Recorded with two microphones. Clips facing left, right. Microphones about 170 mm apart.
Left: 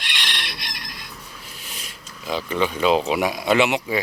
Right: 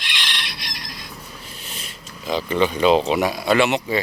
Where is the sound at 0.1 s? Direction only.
55° left (ahead or behind).